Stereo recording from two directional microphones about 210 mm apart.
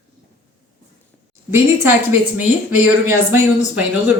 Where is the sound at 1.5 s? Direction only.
10° right (ahead or behind).